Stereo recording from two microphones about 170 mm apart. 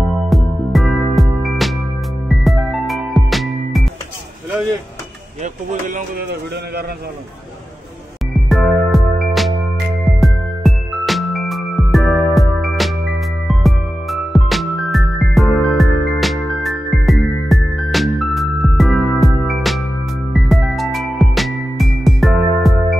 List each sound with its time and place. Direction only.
0.3 s music: centre (ahead or behind)
5.4 s speech: 50° right (ahead or behind)
8.3 s music: centre (ahead or behind)